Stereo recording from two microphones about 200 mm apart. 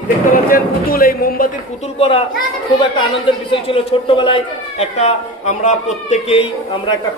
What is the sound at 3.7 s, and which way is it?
A man's voice, 25° left (ahead or behind).